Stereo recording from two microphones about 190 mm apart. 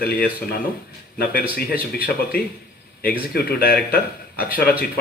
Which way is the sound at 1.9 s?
50° left (ahead or behind).